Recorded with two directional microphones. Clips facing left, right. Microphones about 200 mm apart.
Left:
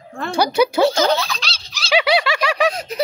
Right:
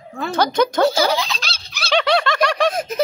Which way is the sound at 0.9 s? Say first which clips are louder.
Left 1 dB; 10° right (ahead or behind).